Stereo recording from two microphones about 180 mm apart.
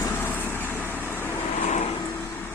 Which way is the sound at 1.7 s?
40° left (ahead or behind).